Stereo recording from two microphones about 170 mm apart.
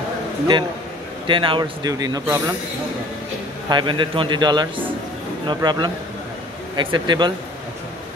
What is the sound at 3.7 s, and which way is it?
Speech, 30° right (ahead or behind).